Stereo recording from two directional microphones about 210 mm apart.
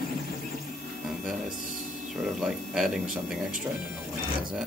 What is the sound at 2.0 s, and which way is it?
Speech, centre (ahead or behind).